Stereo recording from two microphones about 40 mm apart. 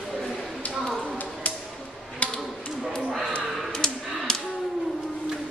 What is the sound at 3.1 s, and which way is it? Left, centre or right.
Speech, centre.